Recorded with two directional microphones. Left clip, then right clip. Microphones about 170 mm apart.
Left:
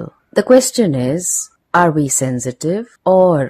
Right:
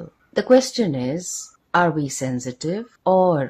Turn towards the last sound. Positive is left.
turn(degrees=35)  # may be behind; listen again after turning